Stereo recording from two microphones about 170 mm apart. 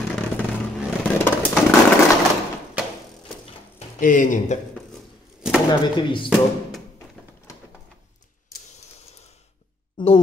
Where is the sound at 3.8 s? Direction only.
50° left (ahead or behind).